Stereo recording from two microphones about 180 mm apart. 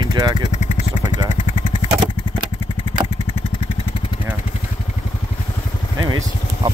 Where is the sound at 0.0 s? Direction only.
20° right (ahead or behind).